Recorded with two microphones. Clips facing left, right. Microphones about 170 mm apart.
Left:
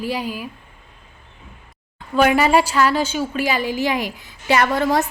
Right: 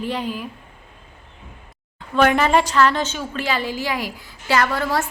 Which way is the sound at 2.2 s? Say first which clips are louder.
Left 1 dB; 10° left (ahead or behind).